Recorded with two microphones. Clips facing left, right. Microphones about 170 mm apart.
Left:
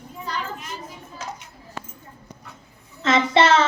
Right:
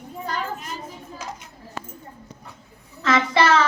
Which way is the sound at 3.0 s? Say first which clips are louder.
Left 2 dB; 25° left (ahead or behind).